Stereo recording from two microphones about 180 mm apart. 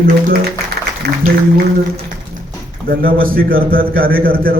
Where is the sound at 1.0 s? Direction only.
60° right (ahead or behind).